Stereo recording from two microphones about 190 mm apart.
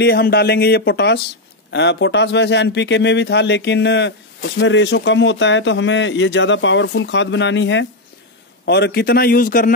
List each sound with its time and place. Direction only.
0.0 s speech: 55° left (ahead or behind); by 7.8 s 75° left (ahead or behind)
8.6 s a man's voice: 60° left (ahead or behind)